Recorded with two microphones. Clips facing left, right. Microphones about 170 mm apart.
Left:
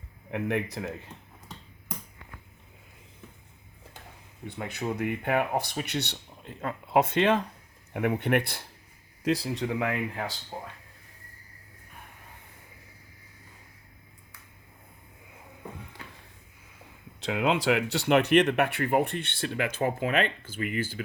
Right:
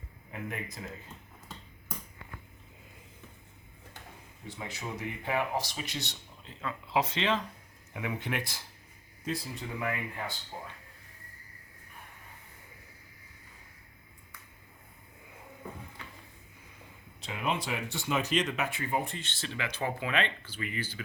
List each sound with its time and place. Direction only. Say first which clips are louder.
0.3 s speech: left 10 dB; 70° left (ahead or behind)
4.4 s speech: left 7 dB; 60° left (ahead or behind)
9.2 s speech: left 9 dB; 80° left
17.2 s speech: left 7 dB; 85° left; by 21.0 s 50° left (ahead or behind)